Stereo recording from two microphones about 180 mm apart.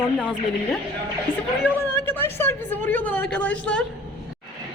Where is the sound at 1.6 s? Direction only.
10° right (ahead or behind).